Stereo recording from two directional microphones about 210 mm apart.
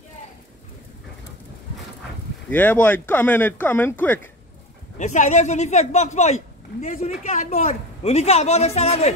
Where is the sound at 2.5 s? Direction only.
10° left (ahead or behind).